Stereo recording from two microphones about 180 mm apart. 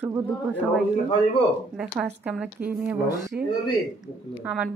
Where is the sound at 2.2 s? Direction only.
5° right (ahead or behind).